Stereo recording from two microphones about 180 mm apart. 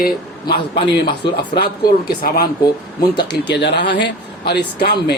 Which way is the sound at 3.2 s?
70° left (ahead or behind).